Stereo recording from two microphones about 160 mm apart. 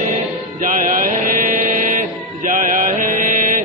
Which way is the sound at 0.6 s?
55° right (ahead or behind).